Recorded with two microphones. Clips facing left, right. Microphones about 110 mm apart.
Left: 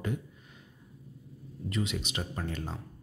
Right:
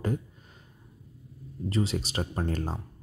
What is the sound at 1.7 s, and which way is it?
Speech, 35° right (ahead or behind).